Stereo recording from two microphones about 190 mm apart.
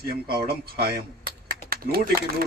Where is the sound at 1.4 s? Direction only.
50° right (ahead or behind).